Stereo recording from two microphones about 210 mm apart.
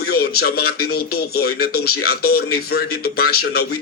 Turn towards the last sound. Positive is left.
turn(degrees=45)  # may be behind; listen again after turning